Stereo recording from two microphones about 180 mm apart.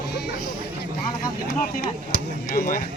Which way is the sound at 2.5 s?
55° left (ahead or behind).